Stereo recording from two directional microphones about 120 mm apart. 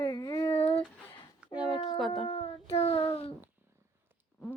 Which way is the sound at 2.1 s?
55° left (ahead or behind).